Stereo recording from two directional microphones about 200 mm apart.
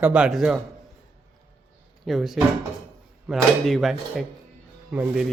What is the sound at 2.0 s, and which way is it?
Speech, centre (ahead or behind).